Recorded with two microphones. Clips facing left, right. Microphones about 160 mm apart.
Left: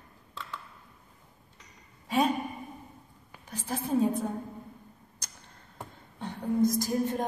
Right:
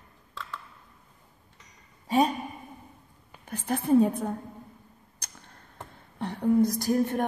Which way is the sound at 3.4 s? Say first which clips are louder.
Right 5 dB; 55° right (ahead or behind).